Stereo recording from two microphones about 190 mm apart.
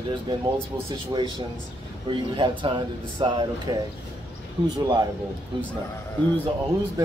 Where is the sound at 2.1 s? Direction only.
25° right (ahead or behind).